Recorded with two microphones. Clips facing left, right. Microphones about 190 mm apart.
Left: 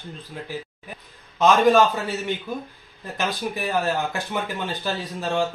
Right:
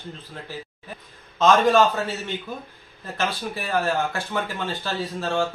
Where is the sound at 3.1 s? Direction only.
15° left (ahead or behind).